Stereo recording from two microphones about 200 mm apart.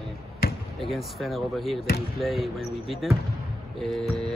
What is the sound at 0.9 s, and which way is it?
Speech, centre (ahead or behind).